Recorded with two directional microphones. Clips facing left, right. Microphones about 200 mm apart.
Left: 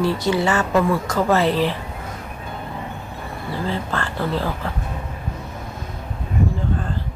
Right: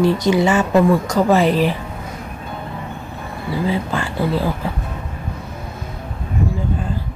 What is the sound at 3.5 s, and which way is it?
A woman's voice, 10° right (ahead or behind).